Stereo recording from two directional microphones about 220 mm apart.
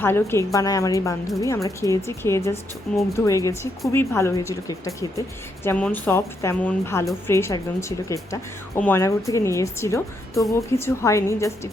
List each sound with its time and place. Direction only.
0.0 s speech: 10° left (ahead or behind)
5.6 s speech: 5° left (ahead or behind)